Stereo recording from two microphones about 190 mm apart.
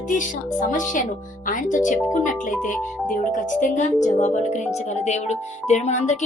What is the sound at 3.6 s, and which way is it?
Speech, 40° left (ahead or behind).